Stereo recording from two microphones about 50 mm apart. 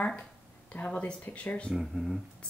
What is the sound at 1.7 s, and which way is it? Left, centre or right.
Speech, centre.